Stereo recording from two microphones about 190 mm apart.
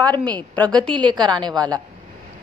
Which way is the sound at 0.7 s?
25° right (ahead or behind).